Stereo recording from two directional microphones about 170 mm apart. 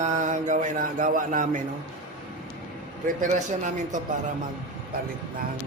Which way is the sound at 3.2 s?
45° right (ahead or behind).